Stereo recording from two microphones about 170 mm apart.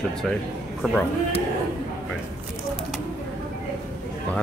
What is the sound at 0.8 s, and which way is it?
Speech, 5° left (ahead or behind).